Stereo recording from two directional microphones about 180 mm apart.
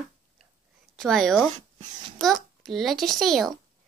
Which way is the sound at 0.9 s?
Centre (ahead or behind).